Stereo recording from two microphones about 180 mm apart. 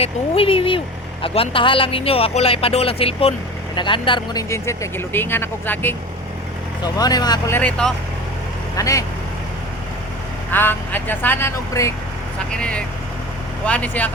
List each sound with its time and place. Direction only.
0.0 s speech: 30° left (ahead or behind)
4.4 s speech: 15° left (ahead or behind)
6.8 s speech: 20° left (ahead or behind)
7.5 s speech: 5° left (ahead or behind)
8.7 s speech: 15° left (ahead or behind)
10.5 s speech: 10° left (ahead or behind)